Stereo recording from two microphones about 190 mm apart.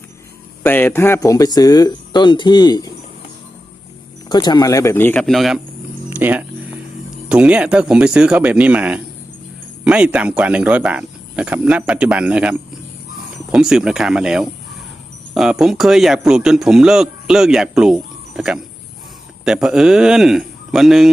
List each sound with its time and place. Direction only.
0.6 s speech: 10° left (ahead or behind)
4.3 s speech: 20° left (ahead or behind); by 5.5 s centre (ahead or behind)
6.1 s a sound: 10° right (ahead or behind)
7.3 s a man's voice: 5° right (ahead or behind)